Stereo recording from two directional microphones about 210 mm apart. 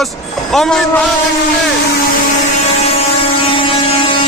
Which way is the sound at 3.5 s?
25° left (ahead or behind).